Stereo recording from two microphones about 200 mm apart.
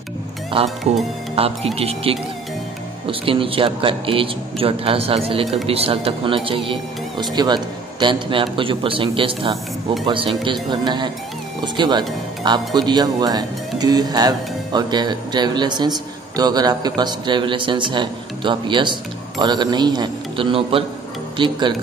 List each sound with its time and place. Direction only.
0.9 s speech: 30° right (ahead or behind)